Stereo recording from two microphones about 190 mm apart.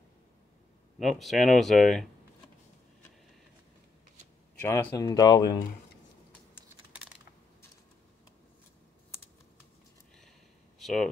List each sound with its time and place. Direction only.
0.9 s speech: centre (ahead or behind)
4.6 s speech: 15° left (ahead or behind)
10.8 s a sound: centre (ahead or behind)